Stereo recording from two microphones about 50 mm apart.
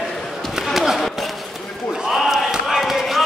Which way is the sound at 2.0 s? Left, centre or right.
Centre.